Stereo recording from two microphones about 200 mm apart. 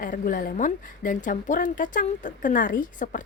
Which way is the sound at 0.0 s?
45° left (ahead or behind).